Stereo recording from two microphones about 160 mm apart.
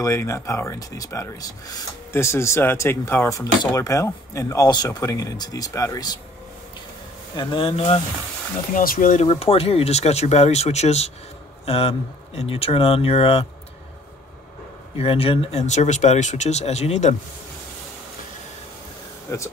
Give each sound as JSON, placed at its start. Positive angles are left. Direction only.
{"t": 0.0, "sound": "speech", "side_deg": 20}
{"t": 7.3, "sound": "speech", "side_deg": 35}
{"t": 8.7, "sound": "speech", "side_deg": 60}
{"t": 9.2, "sound": "speech", "side_deg": 40}
{"t": 15.0, "sound": "speech", "side_deg": 35}
{"t": 19.3, "sound": "speech", "side_deg": 15}